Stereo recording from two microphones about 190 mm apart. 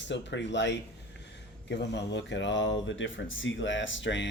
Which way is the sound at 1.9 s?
70° left (ahead or behind).